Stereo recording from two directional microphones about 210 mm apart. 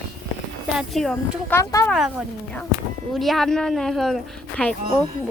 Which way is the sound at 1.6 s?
15° left (ahead or behind).